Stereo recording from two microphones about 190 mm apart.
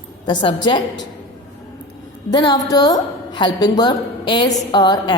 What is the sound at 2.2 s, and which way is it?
A woman's voice, 20° left (ahead or behind).